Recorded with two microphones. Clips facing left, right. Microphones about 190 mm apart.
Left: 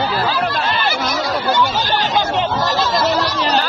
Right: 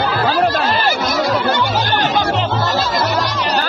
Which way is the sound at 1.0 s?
55° right (ahead or behind).